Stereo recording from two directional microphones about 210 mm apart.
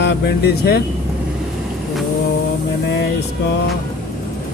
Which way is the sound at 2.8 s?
55° left (ahead or behind).